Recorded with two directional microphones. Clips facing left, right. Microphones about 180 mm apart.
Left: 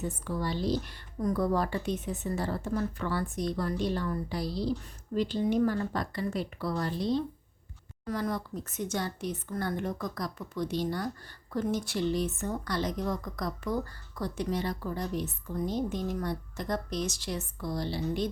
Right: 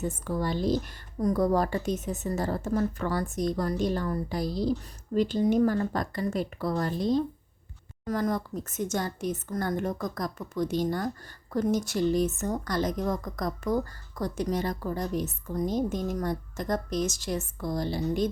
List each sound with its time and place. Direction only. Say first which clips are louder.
0.0 s speech: right 3 dB; 45° right (ahead or behind)